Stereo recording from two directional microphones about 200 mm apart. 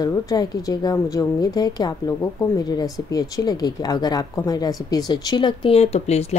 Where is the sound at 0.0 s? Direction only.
20° left (ahead or behind).